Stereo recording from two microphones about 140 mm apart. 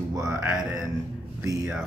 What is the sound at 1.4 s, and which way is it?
Speech, 20° right (ahead or behind).